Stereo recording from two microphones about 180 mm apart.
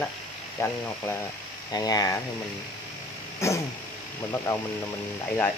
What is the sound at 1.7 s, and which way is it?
Speech, 20° left (ahead or behind).